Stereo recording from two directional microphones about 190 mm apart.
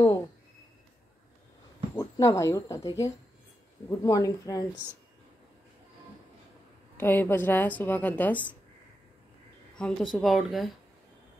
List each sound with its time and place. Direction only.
2.0 s a woman's voice: 15° left (ahead or behind)
7.0 s a woman's voice: 10° left (ahead or behind)
9.8 s speech: 5° left (ahead or behind)